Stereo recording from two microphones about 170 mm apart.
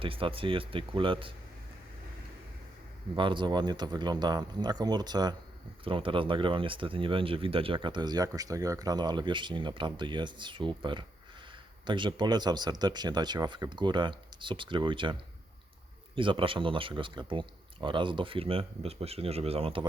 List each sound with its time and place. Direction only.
0.0 s speech: 30° right (ahead or behind)
3.2 s speech: 30° right (ahead or behind)
16.1 s speech: 30° right (ahead or behind)